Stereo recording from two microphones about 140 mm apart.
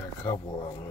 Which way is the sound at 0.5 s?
30° left (ahead or behind).